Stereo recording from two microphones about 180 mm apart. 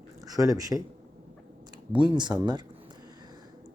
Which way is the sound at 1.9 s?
25° right (ahead or behind).